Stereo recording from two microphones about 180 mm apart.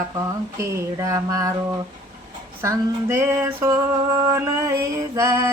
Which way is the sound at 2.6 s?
15° right (ahead or behind).